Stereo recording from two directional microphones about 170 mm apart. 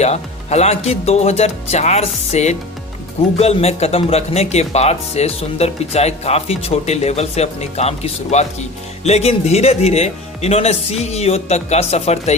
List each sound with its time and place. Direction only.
0.0 s speech: 40° left (ahead or behind)